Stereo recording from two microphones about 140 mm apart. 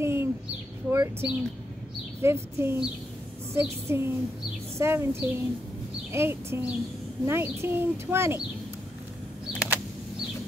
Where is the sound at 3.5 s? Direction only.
20° right (ahead or behind).